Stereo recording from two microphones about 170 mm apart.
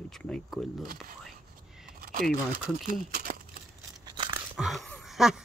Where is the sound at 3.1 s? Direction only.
55° right (ahead or behind).